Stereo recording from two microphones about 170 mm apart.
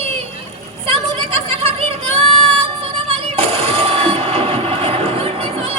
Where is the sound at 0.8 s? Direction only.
35° right (ahead or behind).